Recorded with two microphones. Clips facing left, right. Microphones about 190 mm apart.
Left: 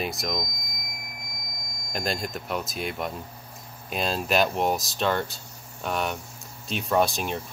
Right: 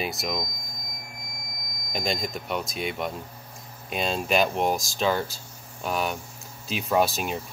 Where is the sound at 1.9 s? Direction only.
Centre (ahead or behind).